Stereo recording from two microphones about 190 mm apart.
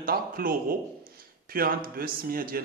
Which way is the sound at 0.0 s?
50° right (ahead or behind).